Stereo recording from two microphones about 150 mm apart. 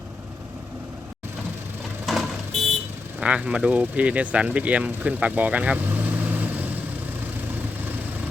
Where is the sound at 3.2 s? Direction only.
10° right (ahead or behind).